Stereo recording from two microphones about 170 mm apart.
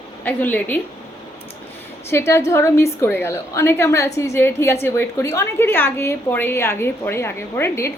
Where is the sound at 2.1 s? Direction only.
15° left (ahead or behind).